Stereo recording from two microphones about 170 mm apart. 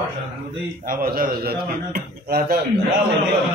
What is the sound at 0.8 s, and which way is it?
A man's voice, 55° right (ahead or behind).